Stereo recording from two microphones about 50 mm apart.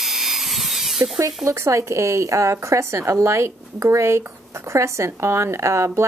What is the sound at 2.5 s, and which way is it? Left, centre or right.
Speech, right.